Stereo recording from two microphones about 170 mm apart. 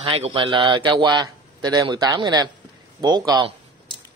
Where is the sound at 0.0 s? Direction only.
30° right (ahead or behind).